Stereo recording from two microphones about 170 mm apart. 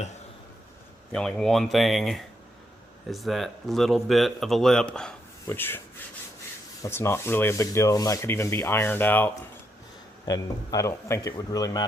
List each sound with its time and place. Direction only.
1.1 s speech: 5° left (ahead or behind)
6.8 s sanding: 15° left (ahead or behind)
10.2 s speech: 20° left (ahead or behind)